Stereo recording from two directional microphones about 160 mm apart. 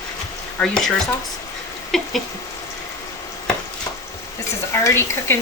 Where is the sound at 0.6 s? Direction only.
5° left (ahead or behind).